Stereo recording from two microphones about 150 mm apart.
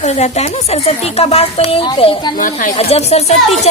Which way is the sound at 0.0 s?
45° left (ahead or behind).